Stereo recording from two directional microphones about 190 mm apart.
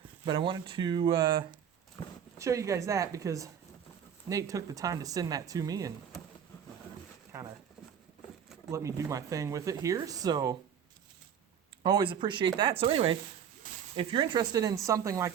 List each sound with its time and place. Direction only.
0.3 s speech: 25° right (ahead or behind)
8.7 s speech: 15° right (ahead or behind)
11.8 s speech: 25° right (ahead or behind)